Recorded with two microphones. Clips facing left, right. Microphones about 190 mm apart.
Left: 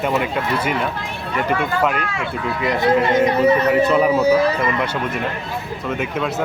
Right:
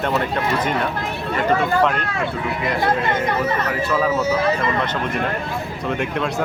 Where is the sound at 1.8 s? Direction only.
5° left (ahead or behind).